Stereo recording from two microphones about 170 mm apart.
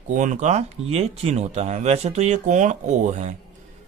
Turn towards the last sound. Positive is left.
turn(degrees=-45)  # may be behind; listen again after turning